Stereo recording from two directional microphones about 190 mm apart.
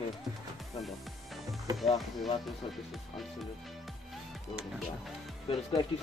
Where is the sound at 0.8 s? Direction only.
Centre (ahead or behind).